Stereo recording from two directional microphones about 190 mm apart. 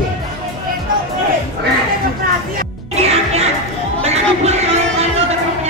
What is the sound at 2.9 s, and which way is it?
Music, 35° right (ahead or behind).